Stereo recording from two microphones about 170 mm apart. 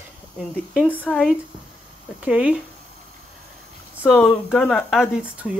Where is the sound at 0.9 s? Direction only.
10° left (ahead or behind).